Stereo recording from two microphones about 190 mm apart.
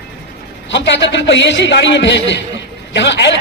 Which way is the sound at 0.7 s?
70° left (ahead or behind).